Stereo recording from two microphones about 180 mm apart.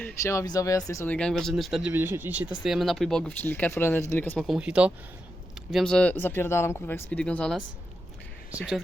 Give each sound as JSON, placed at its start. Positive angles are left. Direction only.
{"t": 0.2, "sound": "speech", "side_deg": 15}
{"t": 4.4, "sound": "speech", "side_deg": -5}